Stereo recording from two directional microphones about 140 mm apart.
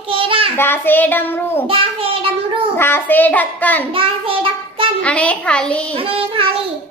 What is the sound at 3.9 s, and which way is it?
Child singing, 40° right (ahead or behind).